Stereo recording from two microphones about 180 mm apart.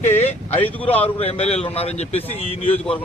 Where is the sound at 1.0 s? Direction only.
35° left (ahead or behind).